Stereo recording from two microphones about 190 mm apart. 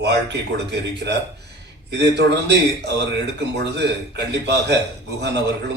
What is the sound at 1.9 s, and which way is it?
A man's voice, 65° right (ahead or behind).